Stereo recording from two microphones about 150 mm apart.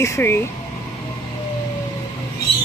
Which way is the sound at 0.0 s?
15° left (ahead or behind).